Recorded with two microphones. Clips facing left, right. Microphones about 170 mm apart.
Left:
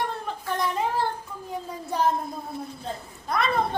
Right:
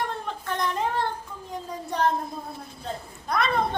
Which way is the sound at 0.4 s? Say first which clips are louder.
Left 1 dB; 5° left (ahead or behind).